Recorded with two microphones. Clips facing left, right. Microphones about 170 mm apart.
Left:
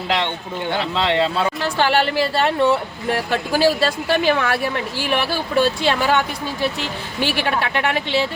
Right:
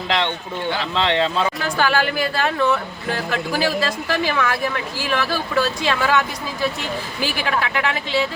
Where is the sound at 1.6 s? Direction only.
30° left (ahead or behind).